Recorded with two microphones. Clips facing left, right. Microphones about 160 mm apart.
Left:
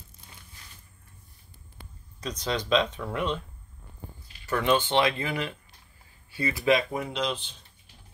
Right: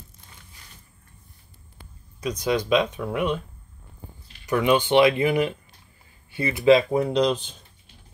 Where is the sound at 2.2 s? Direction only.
10° right (ahead or behind).